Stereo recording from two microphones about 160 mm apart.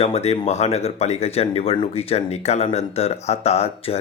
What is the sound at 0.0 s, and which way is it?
Speech, 40° left (ahead or behind).